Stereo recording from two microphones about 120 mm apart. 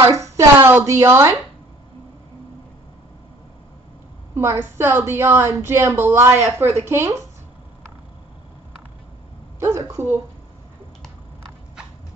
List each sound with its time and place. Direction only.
0.0 s a woman's voice: 25° right (ahead or behind)
4.4 s a woman's voice: 20° right (ahead or behind)
6.4 s speech: 65° right (ahead or behind)
6.8 s a woman's voice: 20° right (ahead or behind)
9.6 s a woman's voice: 25° right (ahead or behind)